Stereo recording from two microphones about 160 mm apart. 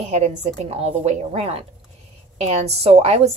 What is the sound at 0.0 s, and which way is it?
A woman's voice, 45° right (ahead or behind).